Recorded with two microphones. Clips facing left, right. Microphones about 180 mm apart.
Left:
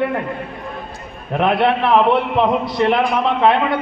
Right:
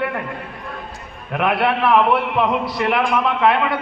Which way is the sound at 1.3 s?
30° left (ahead or behind).